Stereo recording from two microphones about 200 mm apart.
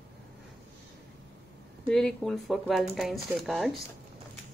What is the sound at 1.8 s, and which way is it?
A woman's voice, 5° left (ahead or behind).